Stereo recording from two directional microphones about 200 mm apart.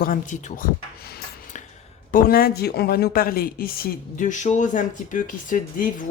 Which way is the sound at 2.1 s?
50° left (ahead or behind).